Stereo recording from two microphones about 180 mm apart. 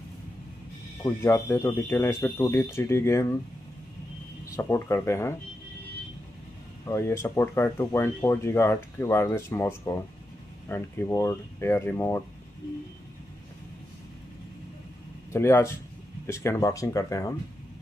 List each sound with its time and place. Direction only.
1.0 s speech: 15° left (ahead or behind)
4.6 s speech: 15° left (ahead or behind)
6.9 s speech: 15° left (ahead or behind)
15.3 s speech: 15° left (ahead or behind)